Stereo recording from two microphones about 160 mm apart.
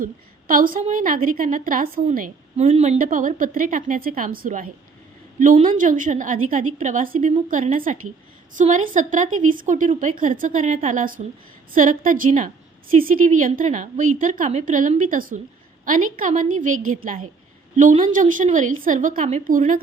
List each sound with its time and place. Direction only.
0.0 s a woman's voice: 60° right (ahead or behind); by 3.0 s 40° right (ahead or behind)
3.0 s a woman's voice: 55° right (ahead or behind)